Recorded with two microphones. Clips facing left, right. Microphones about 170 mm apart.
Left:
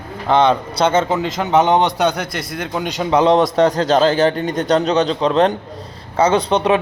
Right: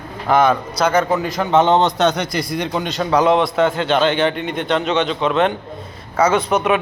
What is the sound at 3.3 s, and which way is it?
A man's voice, 40° left (ahead or behind).